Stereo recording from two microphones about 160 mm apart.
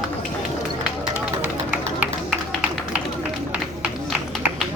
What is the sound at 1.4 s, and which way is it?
Music, 10° right (ahead or behind).